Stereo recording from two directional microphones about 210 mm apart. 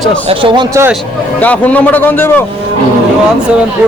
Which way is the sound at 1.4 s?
5° left (ahead or behind).